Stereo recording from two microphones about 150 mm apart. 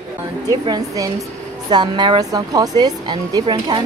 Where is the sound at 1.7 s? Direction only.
30° right (ahead or behind).